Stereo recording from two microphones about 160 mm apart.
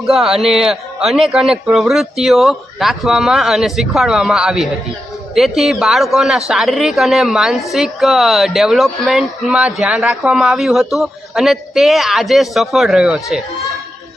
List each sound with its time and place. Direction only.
0.0 s a woman's voice: centre (ahead or behind)